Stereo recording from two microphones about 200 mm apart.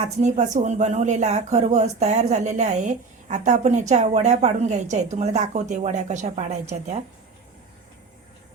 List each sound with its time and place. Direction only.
0.2 s speech: 35° right (ahead or behind)